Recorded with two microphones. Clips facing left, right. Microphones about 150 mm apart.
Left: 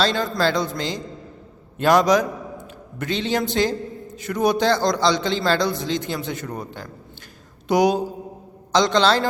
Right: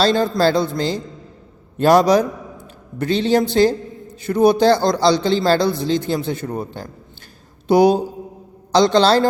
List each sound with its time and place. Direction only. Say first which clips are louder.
0.0 s a man's voice: right 5 dB; 35° right (ahead or behind)